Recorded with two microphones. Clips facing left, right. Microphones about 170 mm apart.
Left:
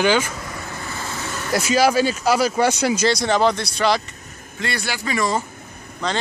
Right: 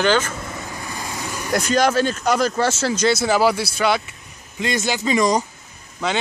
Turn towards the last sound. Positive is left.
turn(degrees=-5)  # may be behind; listen again after turning